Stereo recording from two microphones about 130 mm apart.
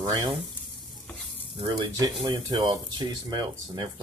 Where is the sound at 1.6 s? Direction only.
35° right (ahead or behind).